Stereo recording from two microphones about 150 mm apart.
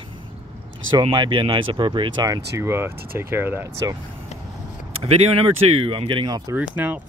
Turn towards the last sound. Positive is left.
turn(degrees=-10)  # may be behind; listen again after turning